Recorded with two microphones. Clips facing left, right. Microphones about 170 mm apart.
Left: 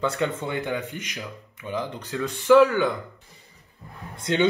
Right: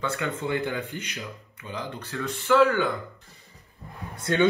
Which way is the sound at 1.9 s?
20° left (ahead or behind).